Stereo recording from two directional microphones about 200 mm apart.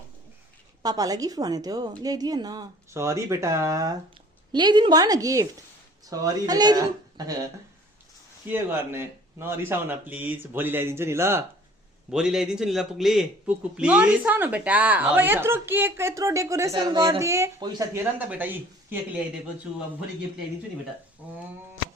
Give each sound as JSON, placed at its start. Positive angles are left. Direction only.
{"t": 0.8, "sound": "a woman's voice", "side_deg": -20}
{"t": 8.4, "sound": "a woman's voice", "side_deg": -10}
{"t": 21.2, "sound": "a woman's voice", "side_deg": -5}